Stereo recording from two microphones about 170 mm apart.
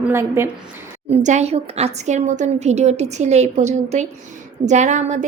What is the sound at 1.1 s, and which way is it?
A woman's voice, 45° right (ahead or behind).